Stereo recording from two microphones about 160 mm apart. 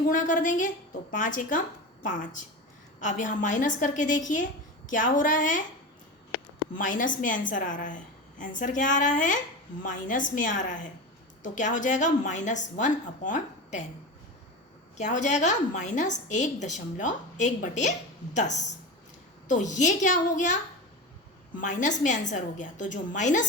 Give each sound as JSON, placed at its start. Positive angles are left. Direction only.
{"t": 0.1, "sound": "a woman's voice", "side_deg": 55}
{"t": 3.0, "sound": "a woman's voice", "side_deg": 50}
{"t": 6.7, "sound": "a woman's voice", "side_deg": 55}
{"t": 14.9, "sound": "a woman's voice", "side_deg": 50}
{"t": 21.6, "sound": "a woman's voice", "side_deg": 50}